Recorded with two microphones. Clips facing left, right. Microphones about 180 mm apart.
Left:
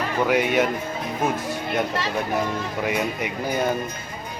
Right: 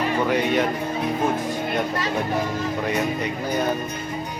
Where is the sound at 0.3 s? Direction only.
5° left (ahead or behind).